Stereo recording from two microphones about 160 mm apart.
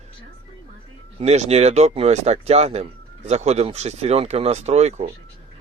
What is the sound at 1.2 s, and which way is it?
Speech, 45° right (ahead or behind).